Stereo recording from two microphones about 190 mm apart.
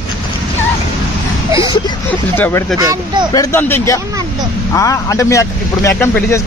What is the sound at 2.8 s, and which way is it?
Speech, 15° right (ahead or behind).